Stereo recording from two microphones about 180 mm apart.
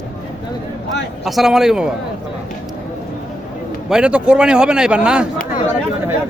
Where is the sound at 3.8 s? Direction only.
5° right (ahead or behind).